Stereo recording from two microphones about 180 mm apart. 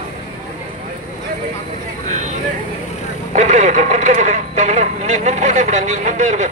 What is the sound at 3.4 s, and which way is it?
Speech, 40° right (ahead or behind).